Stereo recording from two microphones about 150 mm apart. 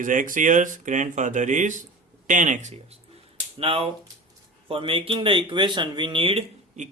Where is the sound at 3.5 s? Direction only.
40° right (ahead or behind).